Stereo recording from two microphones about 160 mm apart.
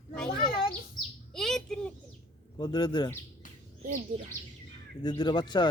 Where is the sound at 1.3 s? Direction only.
5° left (ahead or behind).